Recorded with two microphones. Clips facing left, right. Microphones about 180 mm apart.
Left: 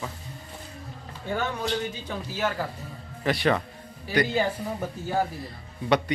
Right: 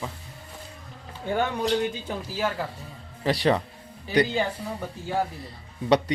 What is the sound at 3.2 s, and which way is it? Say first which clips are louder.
Speech: right 1 dB; 30° right (ahead or behind).